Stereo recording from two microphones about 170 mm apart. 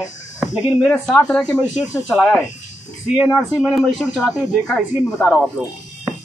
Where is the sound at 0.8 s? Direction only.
5° left (ahead or behind).